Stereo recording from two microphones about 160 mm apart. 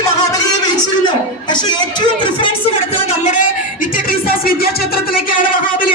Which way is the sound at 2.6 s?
45° left (ahead or behind).